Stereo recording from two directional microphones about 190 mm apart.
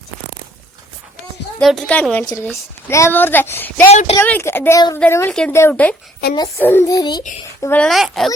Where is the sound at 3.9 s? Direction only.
35° left (ahead or behind).